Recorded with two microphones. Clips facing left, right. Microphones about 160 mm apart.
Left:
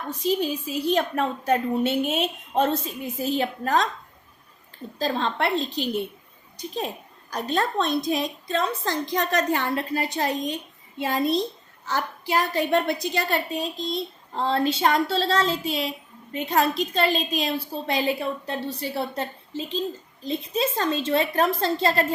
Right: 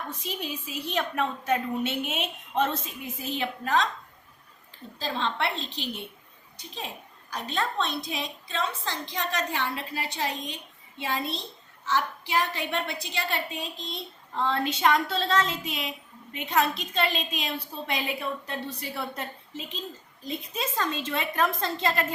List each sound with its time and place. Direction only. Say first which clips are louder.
0.3 s a woman's voice: left 13 dB; 35° left (ahead or behind)
4.9 s a woman's voice: left 5 dB; 45° left (ahead or behind)